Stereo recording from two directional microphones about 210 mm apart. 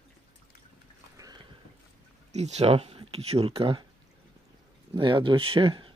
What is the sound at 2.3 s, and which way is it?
Speech, 30° right (ahead or behind).